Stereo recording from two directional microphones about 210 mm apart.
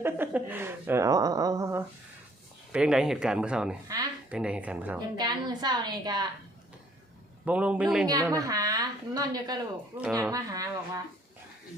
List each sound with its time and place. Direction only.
0.0 s speech: 10° right (ahead or behind)
2.7 s speech: 5° right (ahead or behind)
3.8 s speech: 15° right (ahead or behind)
4.3 s speech: 5° right (ahead or behind)
4.9 s a woman's voice: 20° right (ahead or behind)
7.4 s speech: 5° right (ahead or behind)
8.0 s speech: 15° right (ahead or behind)